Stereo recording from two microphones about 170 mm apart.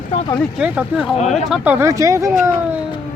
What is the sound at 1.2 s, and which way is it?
Speech, 45° left (ahead or behind).